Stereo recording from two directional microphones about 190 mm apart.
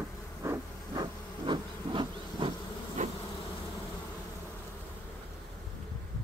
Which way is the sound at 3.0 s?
40° right (ahead or behind).